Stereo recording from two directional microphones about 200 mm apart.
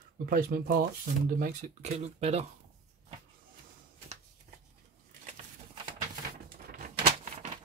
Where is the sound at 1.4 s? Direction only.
40° right (ahead or behind).